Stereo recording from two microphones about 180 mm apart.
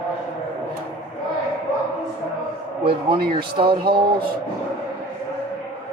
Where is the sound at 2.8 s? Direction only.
30° right (ahead or behind).